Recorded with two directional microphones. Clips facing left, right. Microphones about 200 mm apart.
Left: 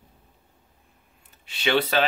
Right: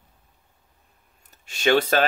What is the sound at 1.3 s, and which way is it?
Speech, 45° right (ahead or behind).